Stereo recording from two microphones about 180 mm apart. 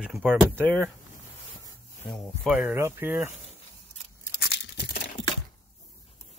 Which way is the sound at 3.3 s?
35° left (ahead or behind).